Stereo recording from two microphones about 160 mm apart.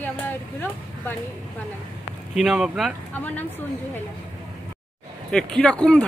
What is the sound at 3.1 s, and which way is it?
Speech, 10° left (ahead or behind).